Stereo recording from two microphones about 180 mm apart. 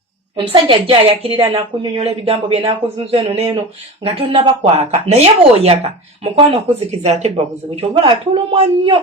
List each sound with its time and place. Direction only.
0.3 s speech: 30° right (ahead or behind)